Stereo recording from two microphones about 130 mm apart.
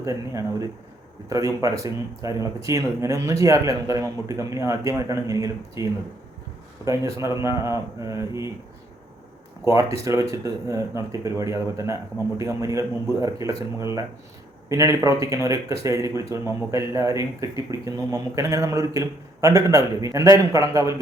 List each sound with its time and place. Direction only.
0.0 s speech: 25° right (ahead or behind)
9.6 s speech: 25° right (ahead or behind)
14.7 s speech: 25° right (ahead or behind)